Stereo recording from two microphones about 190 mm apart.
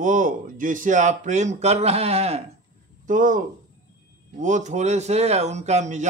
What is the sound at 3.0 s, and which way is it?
Speech, 45° right (ahead or behind).